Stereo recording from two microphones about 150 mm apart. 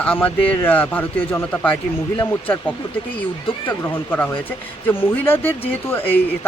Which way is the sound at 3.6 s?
15° left (ahead or behind).